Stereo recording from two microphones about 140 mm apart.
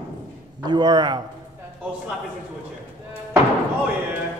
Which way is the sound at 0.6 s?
30° right (ahead or behind).